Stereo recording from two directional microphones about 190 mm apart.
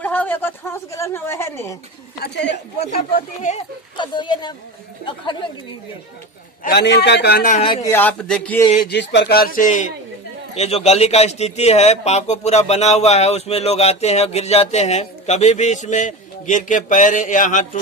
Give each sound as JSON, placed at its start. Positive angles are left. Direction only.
{"t": 0.0, "sound": "speech", "side_deg": 10}
{"t": 2.2, "sound": "a man's voice", "side_deg": 65}
{"t": 3.9, "sound": "speech", "side_deg": 25}
{"t": 6.6, "sound": "a man's voice", "side_deg": 60}
{"t": 7.5, "sound": "speech", "side_deg": 25}
{"t": 7.8, "sound": "speech", "side_deg": 10}
{"t": 8.8, "sound": "a man's voice", "side_deg": 65}